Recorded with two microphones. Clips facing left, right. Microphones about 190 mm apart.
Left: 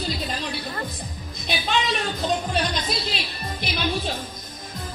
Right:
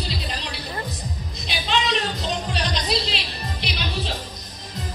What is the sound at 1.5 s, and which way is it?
Music, 50° left (ahead or behind).